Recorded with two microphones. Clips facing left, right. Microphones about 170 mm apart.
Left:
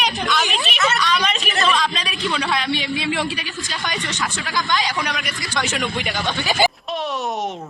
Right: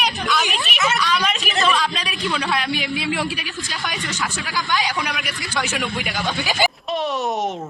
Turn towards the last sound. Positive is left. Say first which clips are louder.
# left 2 dB
turn(degrees=25)  # may be behind; listen again after turning